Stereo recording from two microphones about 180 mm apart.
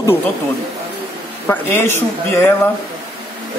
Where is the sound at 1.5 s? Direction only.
10° left (ahead or behind).